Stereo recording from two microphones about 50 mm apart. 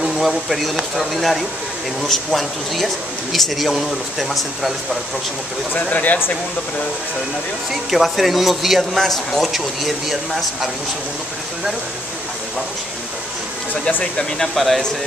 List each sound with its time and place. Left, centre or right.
0.2 s speech: centre
5.7 s speech: left
7.9 s speech: centre
14.5 s speech: centre